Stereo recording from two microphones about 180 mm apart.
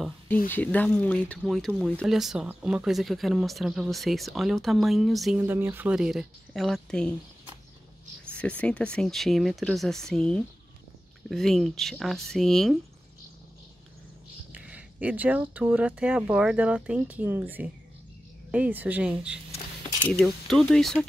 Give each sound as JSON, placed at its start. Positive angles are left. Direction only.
{"t": 0.5, "sound": "speech", "side_deg": 10}
{"t": 5.4, "sound": "speech", "side_deg": -15}
{"t": 8.3, "sound": "speech", "side_deg": 5}
{"t": 14.5, "sound": "speech", "side_deg": -5}